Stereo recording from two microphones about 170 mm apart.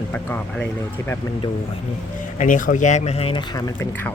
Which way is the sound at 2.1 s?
50° left (ahead or behind).